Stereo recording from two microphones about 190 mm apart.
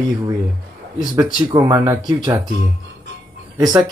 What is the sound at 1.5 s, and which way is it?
Speech, 20° right (ahead or behind).